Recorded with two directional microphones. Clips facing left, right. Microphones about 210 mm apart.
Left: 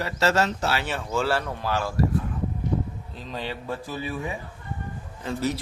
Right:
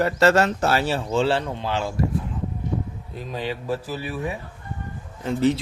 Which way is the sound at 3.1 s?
10° right (ahead or behind).